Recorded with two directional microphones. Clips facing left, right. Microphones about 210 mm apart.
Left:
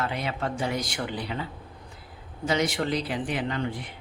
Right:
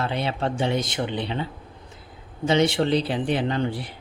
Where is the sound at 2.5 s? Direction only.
25° right (ahead or behind).